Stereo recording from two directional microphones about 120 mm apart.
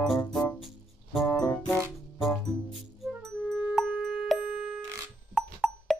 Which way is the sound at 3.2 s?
5° left (ahead or behind).